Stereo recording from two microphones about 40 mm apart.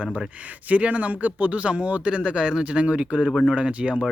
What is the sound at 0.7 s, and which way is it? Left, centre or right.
Speech, right.